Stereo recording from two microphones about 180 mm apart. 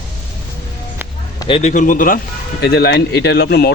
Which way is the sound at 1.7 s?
45° left (ahead or behind).